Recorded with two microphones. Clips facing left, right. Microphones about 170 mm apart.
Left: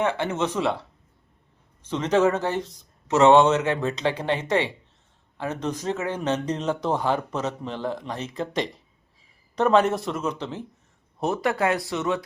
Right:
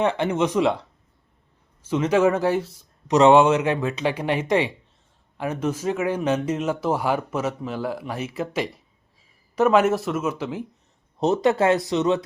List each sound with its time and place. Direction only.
0.0 s speech: 20° right (ahead or behind)
11.2 s speech: 20° right (ahead or behind)